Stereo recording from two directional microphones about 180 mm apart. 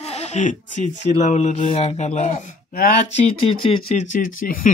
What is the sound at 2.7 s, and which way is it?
Speech, 55° left (ahead or behind).